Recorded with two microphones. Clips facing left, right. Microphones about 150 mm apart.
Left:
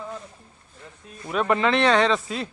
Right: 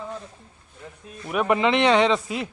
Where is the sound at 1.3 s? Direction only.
15° right (ahead or behind).